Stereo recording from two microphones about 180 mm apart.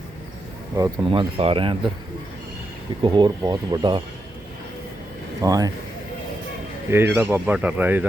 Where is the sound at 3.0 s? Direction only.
25° right (ahead or behind).